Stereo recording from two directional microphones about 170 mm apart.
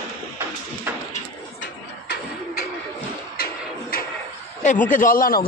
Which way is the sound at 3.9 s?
60° left (ahead or behind).